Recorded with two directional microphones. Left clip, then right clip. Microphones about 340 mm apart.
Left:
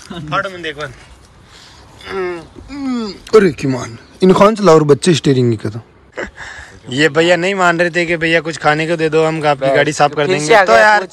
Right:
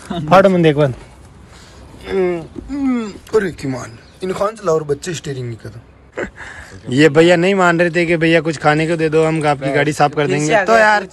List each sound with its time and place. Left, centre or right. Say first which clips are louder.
0.1 s speech: right 9 dB; centre
2.0 s speech: right 3 dB; centre
6.1 s speech: even; centre